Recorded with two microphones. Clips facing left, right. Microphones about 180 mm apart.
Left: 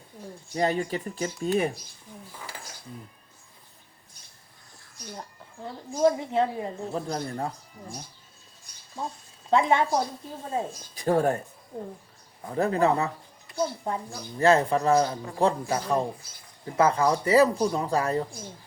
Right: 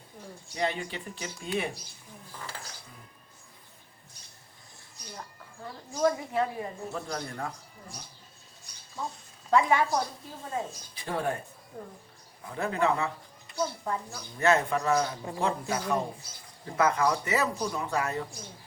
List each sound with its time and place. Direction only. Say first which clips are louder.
0.5 s a woman's voice: left 6 dB; 40° left (ahead or behind)
5.9 s speech: left 4 dB; 25° left (ahead or behind)
9.5 s speech: left 2 dB; 25° left (ahead or behind)
10.7 s speech: left 10 dB; 45° left (ahead or behind)
12.5 s a woman's voice: left 5 dB; 40° left (ahead or behind)
13.6 s a woman's voice: left 3 dB; 25° left (ahead or behind)